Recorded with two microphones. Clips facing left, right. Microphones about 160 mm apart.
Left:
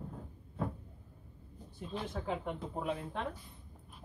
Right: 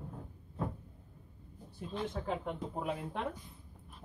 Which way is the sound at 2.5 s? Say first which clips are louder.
Even; 10° right (ahead or behind).